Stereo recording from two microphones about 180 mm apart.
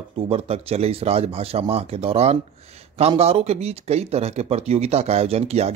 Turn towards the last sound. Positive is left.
turn(degrees=-35)  # may be behind; listen again after turning